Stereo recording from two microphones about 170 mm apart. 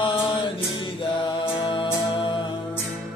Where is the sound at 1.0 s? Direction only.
30° left (ahead or behind).